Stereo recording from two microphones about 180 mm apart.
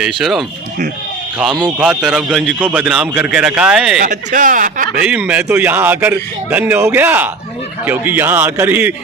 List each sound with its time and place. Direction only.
0.2 s a man's voice: centre (ahead or behind)
1.8 s a man's voice: 5° right (ahead or behind)
4.0 s speech: 45° right (ahead or behind)
5.0 s a man's voice: 5° right (ahead or behind)